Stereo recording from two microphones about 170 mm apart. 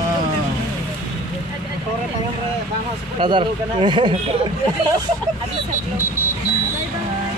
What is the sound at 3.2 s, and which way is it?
Speech, 30° right (ahead or behind).